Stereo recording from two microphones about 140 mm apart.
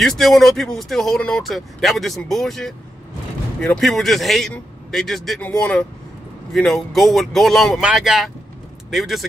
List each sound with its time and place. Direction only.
0.0 s speech: centre (ahead or behind)